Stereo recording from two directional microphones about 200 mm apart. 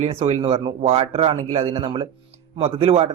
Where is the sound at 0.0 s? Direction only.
30° right (ahead or behind).